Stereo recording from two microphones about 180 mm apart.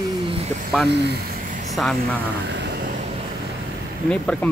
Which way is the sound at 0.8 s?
70° right (ahead or behind).